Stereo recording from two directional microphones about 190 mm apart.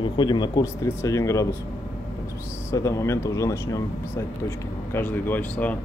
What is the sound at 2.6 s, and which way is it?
Speech, 15° left (ahead or behind).